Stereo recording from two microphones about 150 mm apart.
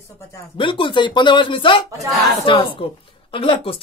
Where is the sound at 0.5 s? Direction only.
35° left (ahead or behind).